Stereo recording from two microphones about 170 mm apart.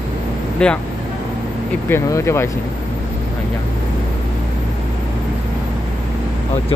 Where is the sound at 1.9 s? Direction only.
15° left (ahead or behind).